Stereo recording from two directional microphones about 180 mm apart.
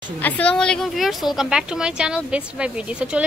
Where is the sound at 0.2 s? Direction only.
5° left (ahead or behind).